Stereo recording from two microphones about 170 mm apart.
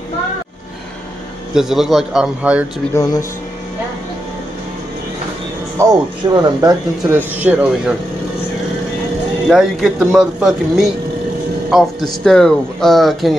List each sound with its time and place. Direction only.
1.5 s speech: centre (ahead or behind)
2.9 s speech: 20° left (ahead or behind)
5.8 s speech: 20° right (ahead or behind)
7.3 s speech: 10° right (ahead or behind)
9.5 s speech: centre (ahead or behind)